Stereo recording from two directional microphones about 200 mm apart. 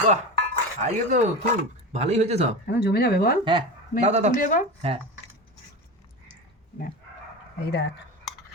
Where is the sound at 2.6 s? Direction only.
55° left (ahead or behind).